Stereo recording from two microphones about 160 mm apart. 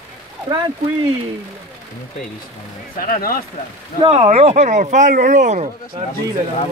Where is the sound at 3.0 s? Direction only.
65° left (ahead or behind).